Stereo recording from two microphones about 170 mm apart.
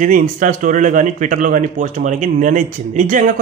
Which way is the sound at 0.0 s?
50° right (ahead or behind).